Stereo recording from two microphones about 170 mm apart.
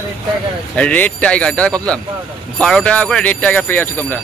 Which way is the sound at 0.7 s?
10° left (ahead or behind).